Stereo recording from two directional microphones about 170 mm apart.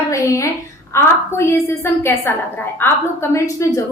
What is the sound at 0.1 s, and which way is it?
A woman's voice, 20° left (ahead or behind).